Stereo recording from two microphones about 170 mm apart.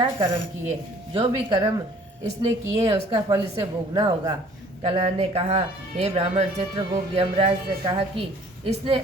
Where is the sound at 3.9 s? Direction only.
25° right (ahead or behind).